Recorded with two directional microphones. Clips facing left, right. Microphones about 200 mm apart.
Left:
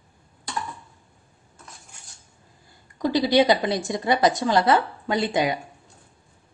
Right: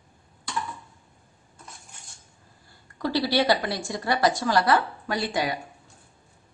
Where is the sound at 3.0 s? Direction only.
15° left (ahead or behind).